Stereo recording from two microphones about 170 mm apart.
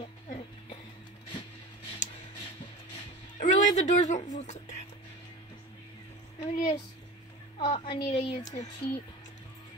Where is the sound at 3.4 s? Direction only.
45° left (ahead or behind).